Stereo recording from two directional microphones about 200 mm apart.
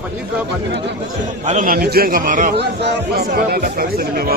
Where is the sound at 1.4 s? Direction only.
40° right (ahead or behind).